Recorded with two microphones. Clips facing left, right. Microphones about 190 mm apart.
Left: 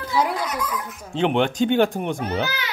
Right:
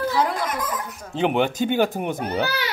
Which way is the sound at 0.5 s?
50° right (ahead or behind).